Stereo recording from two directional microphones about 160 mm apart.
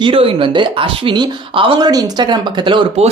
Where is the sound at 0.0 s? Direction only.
35° right (ahead or behind).